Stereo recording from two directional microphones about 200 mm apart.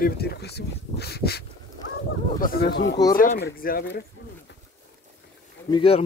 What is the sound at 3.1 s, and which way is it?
Speech, 45° left (ahead or behind).